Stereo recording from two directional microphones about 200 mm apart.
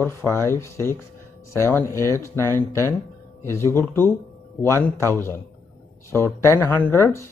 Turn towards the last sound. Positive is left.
turn(degrees=15)  # may be behind; listen again after turning